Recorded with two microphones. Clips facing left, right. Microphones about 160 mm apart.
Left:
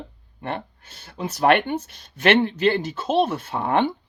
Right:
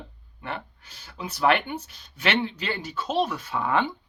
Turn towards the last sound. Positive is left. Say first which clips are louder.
# left 4 dB
turn(degrees=60)  # may be behind; listen again after turning